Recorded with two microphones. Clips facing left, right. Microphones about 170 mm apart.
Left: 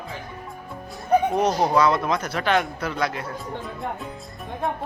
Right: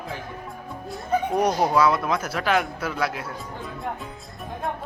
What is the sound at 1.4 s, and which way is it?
Speech, 10° right (ahead or behind).